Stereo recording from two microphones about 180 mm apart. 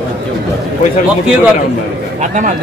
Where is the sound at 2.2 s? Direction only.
45° right (ahead or behind).